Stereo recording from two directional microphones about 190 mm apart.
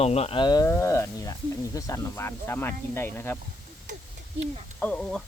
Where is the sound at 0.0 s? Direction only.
30° left (ahead or behind); by 3.3 s 10° left (ahead or behind).